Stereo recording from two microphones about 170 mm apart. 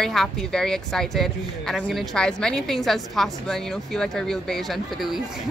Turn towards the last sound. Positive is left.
turn(degrees=0)  # may be behind; listen again after turning